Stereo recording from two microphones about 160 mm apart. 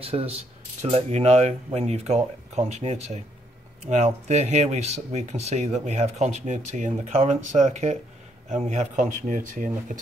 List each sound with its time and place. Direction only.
0.0 s speech: 40° right (ahead or behind); by 9.9 s 55° right (ahead or behind)